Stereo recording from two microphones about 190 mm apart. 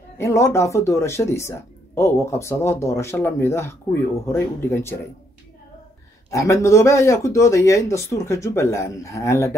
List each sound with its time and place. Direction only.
0.2 s speech: 15° left (ahead or behind)
6.3 s speech: 15° left (ahead or behind)